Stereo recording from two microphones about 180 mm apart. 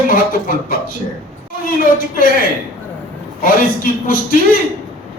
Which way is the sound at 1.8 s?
50° left (ahead or behind).